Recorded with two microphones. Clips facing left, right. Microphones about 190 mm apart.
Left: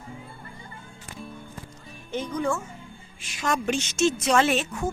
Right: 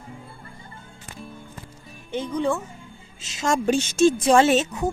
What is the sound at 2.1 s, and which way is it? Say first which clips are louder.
Speech: right 3 dB; 15° right (ahead or behind).